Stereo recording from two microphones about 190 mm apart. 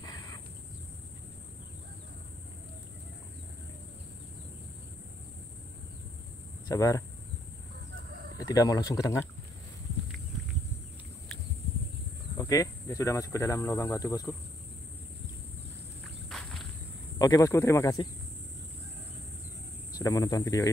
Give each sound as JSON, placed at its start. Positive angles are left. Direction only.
{"t": 0.0, "sound": "a sound", "side_deg": 20}
{"t": 6.7, "sound": "speech", "side_deg": 15}
{"t": 8.4, "sound": "speech", "side_deg": 20}
{"t": 12.4, "sound": "speech", "side_deg": 15}
{"t": 16.3, "sound": "walk", "side_deg": 0}
{"t": 17.2, "sound": "speech", "side_deg": 15}
{"t": 19.9, "sound": "speech", "side_deg": 20}